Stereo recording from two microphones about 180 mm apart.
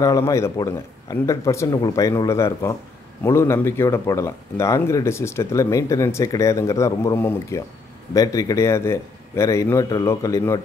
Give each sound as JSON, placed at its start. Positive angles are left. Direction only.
{"t": 0.0, "sound": "speech", "side_deg": 20}